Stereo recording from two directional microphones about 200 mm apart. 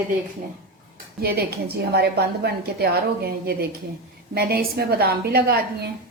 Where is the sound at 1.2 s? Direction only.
55° right (ahead or behind).